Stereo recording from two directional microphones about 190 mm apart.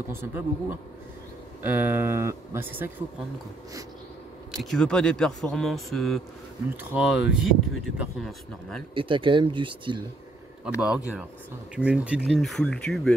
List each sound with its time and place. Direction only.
0.1 s speech: 10° right (ahead or behind)
4.5 s speech: 5° left (ahead or behind)
8.9 s speech: 25° right (ahead or behind)
10.6 s speech: centre (ahead or behind)